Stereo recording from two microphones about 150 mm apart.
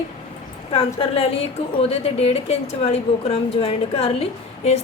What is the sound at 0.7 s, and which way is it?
A woman's voice, 40° left (ahead or behind).